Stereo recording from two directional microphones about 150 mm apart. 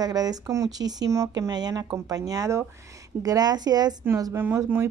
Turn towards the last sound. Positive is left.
turn(degrees=-15)  # may be behind; listen again after turning